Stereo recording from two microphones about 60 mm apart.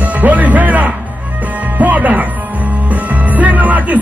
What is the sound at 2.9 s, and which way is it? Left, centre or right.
Music, right.